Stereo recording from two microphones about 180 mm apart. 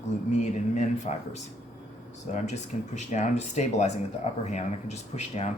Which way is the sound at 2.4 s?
40° left (ahead or behind).